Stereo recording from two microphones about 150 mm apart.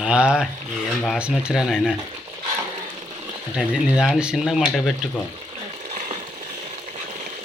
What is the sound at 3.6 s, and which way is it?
Speech, 5° right (ahead or behind).